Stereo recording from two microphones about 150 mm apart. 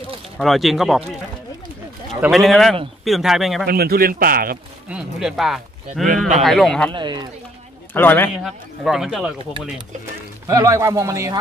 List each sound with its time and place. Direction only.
0.4 s speech: centre (ahead or behind)
2.3 s speech: centre (ahead or behind)
3.6 s a man's voice: 90° right
4.8 s speech: 5° right (ahead or behind)
6.9 s speech: 30° right (ahead or behind)
7.9 s speech: 15° left (ahead or behind)
8.5 s speech: centre (ahead or behind)
10.5 s speech: 20° right (ahead or behind)